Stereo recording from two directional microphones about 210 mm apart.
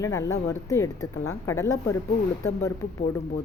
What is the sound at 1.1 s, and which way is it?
Speech, 90° left.